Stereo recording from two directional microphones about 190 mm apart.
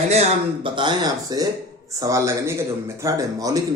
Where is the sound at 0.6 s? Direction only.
25° right (ahead or behind).